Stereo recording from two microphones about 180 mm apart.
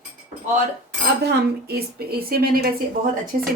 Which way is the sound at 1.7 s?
60° right (ahead or behind).